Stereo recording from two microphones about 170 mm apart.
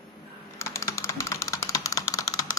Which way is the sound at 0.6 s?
15° left (ahead or behind).